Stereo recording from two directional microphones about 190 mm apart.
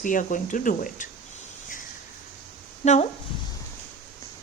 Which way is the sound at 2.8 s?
35° left (ahead or behind).